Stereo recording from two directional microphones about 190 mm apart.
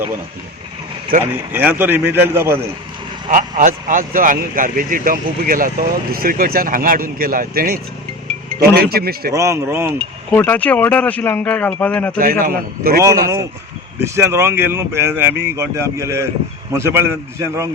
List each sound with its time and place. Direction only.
1.2 s speech: 10° right (ahead or behind)
3.2 s speech: 45° right (ahead or behind)
9.3 s speech: 15° right (ahead or behind)
10.3 s speech: 10° left (ahead or behind)
12.2 s speech: 50° right (ahead or behind)
13.0 s speech: 15° right (ahead or behind)